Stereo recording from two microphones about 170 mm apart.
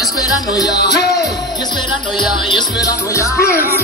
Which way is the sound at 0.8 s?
75° left (ahead or behind).